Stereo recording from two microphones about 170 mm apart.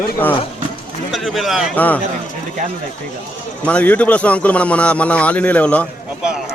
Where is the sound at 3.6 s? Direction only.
10° left (ahead or behind).